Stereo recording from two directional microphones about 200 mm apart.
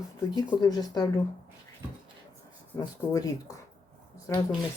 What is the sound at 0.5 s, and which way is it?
Speech, 20° left (ahead or behind).